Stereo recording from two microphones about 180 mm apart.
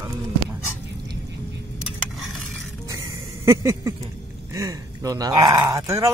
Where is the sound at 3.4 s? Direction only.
15° right (ahead or behind).